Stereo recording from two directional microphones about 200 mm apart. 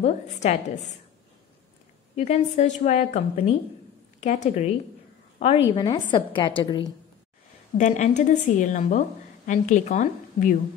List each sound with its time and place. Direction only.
0.0 s a woman's voice: 35° left (ahead or behind)
2.1 s a woman's voice: 35° left (ahead or behind)
7.7 s a woman's voice: 35° left (ahead or behind)